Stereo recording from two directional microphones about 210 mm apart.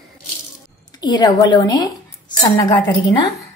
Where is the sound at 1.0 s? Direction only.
20° left (ahead or behind).